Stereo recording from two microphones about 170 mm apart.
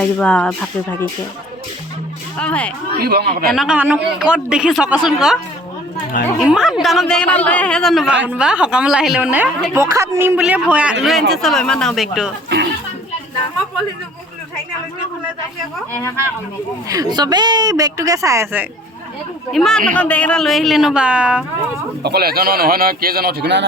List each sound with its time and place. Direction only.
0.0 s speech: 5° left (ahead or behind)
2.4 s speech: 5° left (ahead or behind)
3.0 s speech: 65° right (ahead or behind)
3.4 s a man's voice: centre (ahead or behind)
6.4 s a man's voice: 5° right (ahead or behind)
16.9 s a woman's voice: 20° right (ahead or behind)
19.5 s a man's voice: centre (ahead or behind)
22.0 s a man's voice: 70° right (ahead or behind)